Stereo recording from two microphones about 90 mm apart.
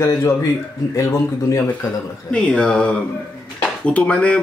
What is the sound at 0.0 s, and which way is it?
Speech, 35° left (ahead or behind).